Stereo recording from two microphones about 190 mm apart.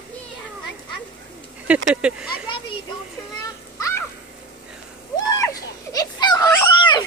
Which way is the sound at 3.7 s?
15° left (ahead or behind).